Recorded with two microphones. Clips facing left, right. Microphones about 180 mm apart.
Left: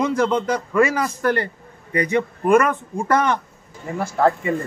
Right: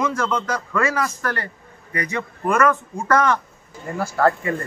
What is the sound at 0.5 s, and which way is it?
A man's voice, 20° left (ahead or behind).